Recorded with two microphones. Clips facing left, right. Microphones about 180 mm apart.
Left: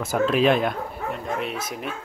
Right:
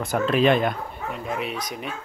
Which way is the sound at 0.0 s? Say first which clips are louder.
Even; centre (ahead or behind).